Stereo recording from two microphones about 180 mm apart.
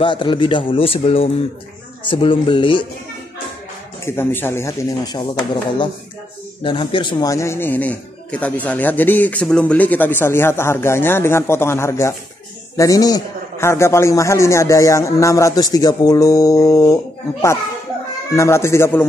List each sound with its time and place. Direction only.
0.0 s a man's voice: 25° left (ahead or behind)
4.0 s a man's voice: 10° left (ahead or behind)